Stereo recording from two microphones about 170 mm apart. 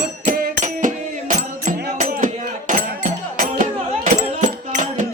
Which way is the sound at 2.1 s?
50° right (ahead or behind).